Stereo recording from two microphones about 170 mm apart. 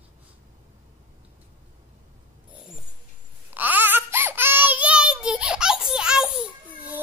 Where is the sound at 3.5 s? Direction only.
10° right (ahead or behind).